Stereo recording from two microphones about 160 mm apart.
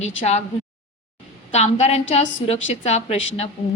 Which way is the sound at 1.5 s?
45° left (ahead or behind).